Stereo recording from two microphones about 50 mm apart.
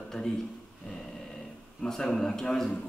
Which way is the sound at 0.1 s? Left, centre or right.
Centre.